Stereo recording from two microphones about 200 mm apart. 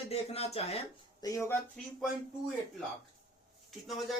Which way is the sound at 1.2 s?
15° left (ahead or behind).